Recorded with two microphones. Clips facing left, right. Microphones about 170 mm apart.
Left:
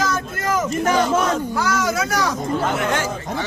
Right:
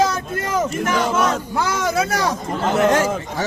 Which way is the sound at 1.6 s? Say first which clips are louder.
Right 1 dB; 30° right (ahead or behind).